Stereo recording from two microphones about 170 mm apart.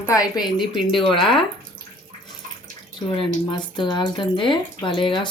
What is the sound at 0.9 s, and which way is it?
Speech, 30° left (ahead or behind).